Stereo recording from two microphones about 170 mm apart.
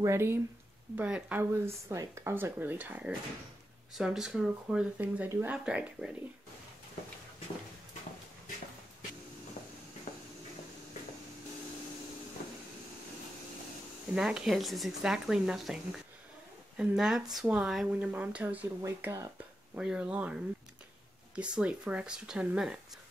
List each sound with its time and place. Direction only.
0.0 s speech: 15° right (ahead or behind)
10.1 s a sound: 40° left (ahead or behind)
14.1 s speech: 5° right (ahead or behind)
21.4 s speech: 5° right (ahead or behind)